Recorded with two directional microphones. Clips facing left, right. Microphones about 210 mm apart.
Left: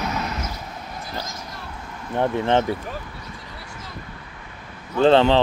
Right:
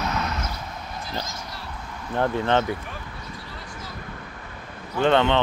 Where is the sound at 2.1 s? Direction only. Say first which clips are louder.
Left 2 dB; 25° left (ahead or behind).